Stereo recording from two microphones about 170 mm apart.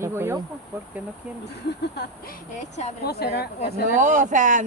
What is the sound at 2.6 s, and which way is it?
Speech, 40° left (ahead or behind).